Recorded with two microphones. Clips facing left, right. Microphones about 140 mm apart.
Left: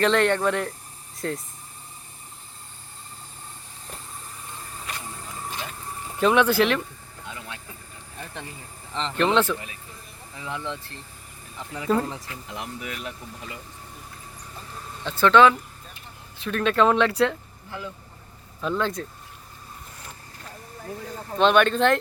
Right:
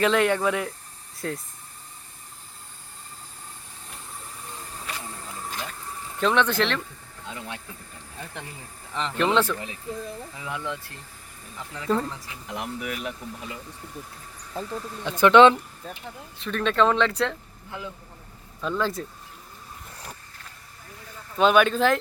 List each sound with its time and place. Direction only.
0.0 s speech: 5° right (ahead or behind)
6.1 s speech: 10° left (ahead or behind)
7.3 s speech: 25° right (ahead or behind)
9.0 s speech: 5° right (ahead or behind)
11.7 s speech: 5° left (ahead or behind)
12.2 s speech: 15° right (ahead or behind)
15.0 s speech: 15° right (ahead or behind)
16.4 s speech: 5° left (ahead or behind)
18.6 s speech: centre (ahead or behind)
20.8 s speech: 50° left (ahead or behind)
21.3 s speech: 5° right (ahead or behind)